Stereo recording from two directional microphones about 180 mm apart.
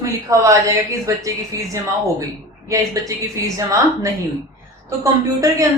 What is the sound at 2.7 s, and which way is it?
A woman's voice, 20° right (ahead or behind).